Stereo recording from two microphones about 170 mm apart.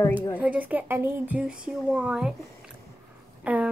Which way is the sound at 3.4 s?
10° right (ahead or behind).